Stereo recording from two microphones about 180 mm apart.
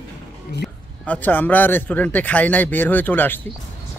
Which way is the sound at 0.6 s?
10° left (ahead or behind).